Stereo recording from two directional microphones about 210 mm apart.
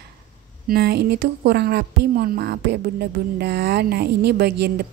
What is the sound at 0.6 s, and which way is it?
Speech, 50° right (ahead or behind).